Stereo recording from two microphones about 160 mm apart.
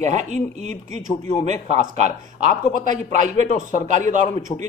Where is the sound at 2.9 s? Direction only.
45° right (ahead or behind).